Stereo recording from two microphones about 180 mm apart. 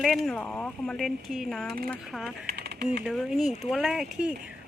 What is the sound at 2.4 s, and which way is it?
Typing, 65° right (ahead or behind).